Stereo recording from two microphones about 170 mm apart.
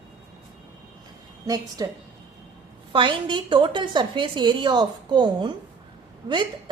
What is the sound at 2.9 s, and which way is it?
A woman's voice, 30° right (ahead or behind).